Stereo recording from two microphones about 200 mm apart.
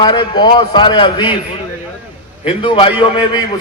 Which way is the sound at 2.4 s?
25° left (ahead or behind).